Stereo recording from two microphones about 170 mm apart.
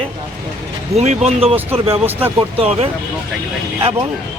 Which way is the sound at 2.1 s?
10° right (ahead or behind).